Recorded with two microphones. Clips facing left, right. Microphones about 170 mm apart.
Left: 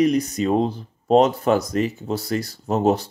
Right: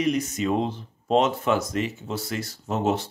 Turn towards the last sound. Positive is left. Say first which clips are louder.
# left 5 dB
turn(degrees=35)  # may be behind; listen again after turning